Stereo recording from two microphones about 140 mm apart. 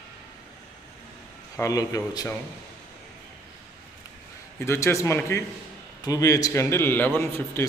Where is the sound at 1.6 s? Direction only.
25° left (ahead or behind).